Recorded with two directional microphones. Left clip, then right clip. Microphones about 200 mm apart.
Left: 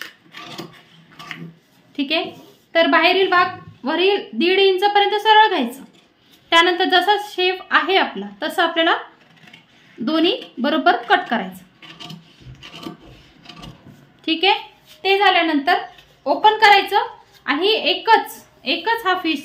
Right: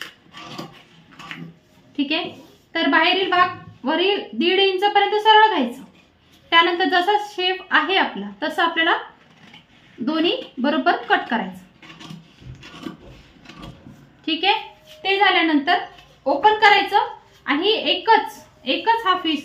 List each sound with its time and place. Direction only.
2.0 s a woman's voice: 40° left (ahead or behind)
10.0 s a woman's voice: 40° left (ahead or behind)
14.3 s a woman's voice: 40° left (ahead or behind)